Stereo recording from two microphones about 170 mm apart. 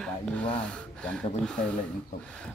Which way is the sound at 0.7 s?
5° left (ahead or behind).